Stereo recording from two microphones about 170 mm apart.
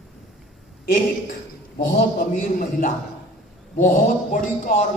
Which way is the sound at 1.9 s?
55° left (ahead or behind).